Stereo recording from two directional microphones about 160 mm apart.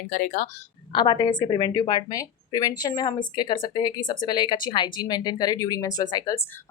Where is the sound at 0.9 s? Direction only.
25° left (ahead or behind).